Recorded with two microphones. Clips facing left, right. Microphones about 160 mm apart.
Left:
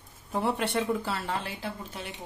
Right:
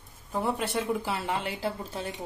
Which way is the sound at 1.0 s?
15° right (ahead or behind).